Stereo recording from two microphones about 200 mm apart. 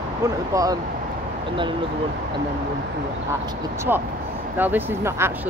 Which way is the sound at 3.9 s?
10° right (ahead or behind).